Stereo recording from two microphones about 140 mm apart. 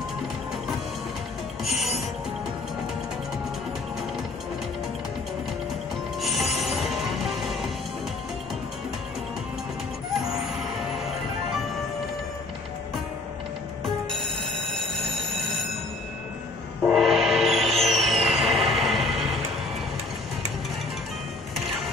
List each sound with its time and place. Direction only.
1.6 s music: centre (ahead or behind)
6.2 s music: centre (ahead or behind)
10.2 s vehicle: centre (ahead or behind)
13.8 s music: centre (ahead or behind)
14.9 s train: centre (ahead or behind)
16.8 s gong: centre (ahead or behind)